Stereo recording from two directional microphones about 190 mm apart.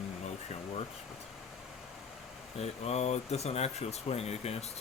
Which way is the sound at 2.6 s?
35° left (ahead or behind).